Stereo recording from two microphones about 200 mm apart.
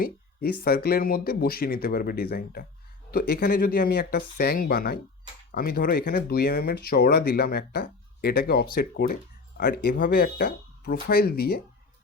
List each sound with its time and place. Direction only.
0.0 s speech: 50° left (ahead or behind)